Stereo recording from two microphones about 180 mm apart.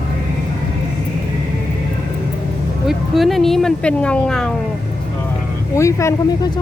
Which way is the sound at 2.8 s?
Centre (ahead or behind).